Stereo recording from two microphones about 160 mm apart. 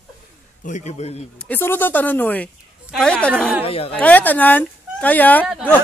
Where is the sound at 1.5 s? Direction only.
15° left (ahead or behind).